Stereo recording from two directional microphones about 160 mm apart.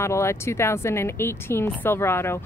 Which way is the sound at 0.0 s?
15° left (ahead or behind).